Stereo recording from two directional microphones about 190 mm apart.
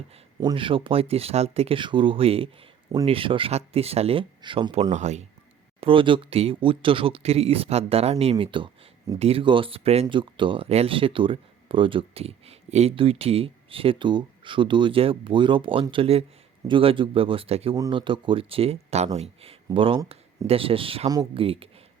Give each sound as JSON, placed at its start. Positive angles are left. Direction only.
{"t": 0.3, "sound": "speech", "side_deg": -25}
{"t": 5.8, "sound": "speech", "side_deg": -25}